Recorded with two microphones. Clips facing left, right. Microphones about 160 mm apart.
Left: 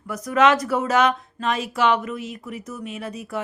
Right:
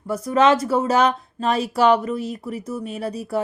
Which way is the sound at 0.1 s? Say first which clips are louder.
Right 2 dB; 30° right (ahead or behind).